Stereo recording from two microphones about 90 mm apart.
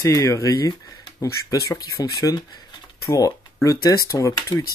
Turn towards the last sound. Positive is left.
turn(degrees=35)  # may be behind; listen again after turning